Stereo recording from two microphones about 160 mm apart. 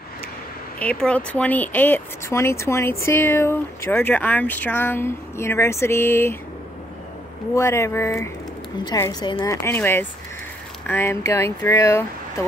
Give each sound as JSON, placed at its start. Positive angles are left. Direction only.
{"t": 0.7, "sound": "speech", "side_deg": 5}
{"t": 7.5, "sound": "a woman's voice", "side_deg": 15}